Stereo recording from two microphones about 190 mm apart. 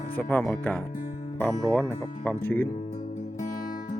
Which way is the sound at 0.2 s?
10° left (ahead or behind).